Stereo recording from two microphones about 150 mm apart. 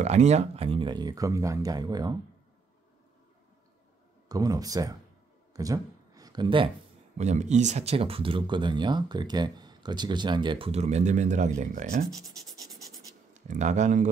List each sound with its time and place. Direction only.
0.0 s speech: 50° right (ahead or behind); by 2.1 s 25° right (ahead or behind)
4.3 s speech: 25° right (ahead or behind)
5.5 s a sound: 25° right (ahead or behind)
7.2 s speech: 50° right (ahead or behind)
13.3 s speech: 55° right (ahead or behind)